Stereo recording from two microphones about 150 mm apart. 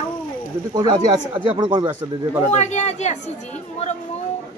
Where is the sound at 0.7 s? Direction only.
30° right (ahead or behind).